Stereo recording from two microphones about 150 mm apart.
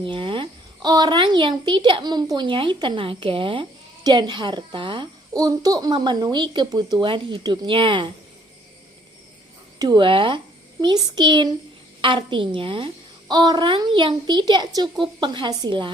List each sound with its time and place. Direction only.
0.0 s a child's voice: 35° right (ahead or behind)
9.7 s a child's voice: 25° right (ahead or behind)